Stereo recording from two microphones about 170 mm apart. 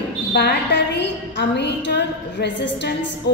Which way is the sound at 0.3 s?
75° left (ahead or behind).